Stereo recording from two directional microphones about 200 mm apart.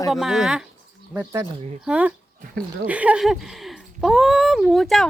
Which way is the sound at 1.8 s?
5° right (ahead or behind).